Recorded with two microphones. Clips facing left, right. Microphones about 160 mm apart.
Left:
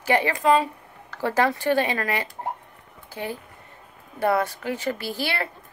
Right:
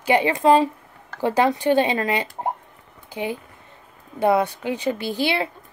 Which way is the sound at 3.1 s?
15° right (ahead or behind).